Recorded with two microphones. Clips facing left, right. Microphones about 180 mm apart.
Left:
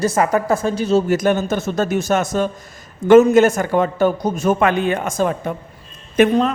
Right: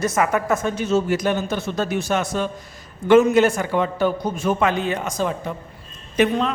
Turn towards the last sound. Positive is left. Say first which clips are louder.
# left 5 dB
turn(degrees=50)  # may be behind; listen again after turning